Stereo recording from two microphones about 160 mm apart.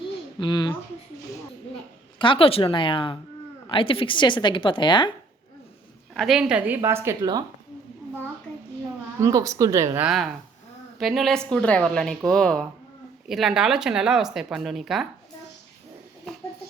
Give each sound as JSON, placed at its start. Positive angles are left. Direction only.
{"t": 0.3, "sound": "speech", "side_deg": 30}
{"t": 2.1, "sound": "a woman's voice", "side_deg": 30}
{"t": 6.1, "sound": "a woman's voice", "side_deg": 0}
{"t": 9.2, "sound": "speech", "side_deg": -20}
{"t": 10.1, "sound": "speech", "side_deg": 0}